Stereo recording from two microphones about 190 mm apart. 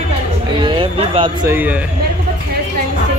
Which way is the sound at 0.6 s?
25° right (ahead or behind).